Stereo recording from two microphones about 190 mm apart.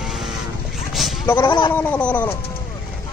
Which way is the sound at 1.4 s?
25° left (ahead or behind).